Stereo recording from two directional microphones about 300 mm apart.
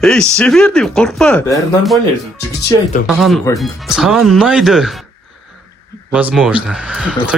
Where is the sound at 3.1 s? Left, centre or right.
Centre.